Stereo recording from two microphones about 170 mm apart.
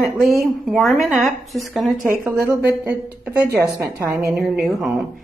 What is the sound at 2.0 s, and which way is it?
A woman's voice, 10° right (ahead or behind).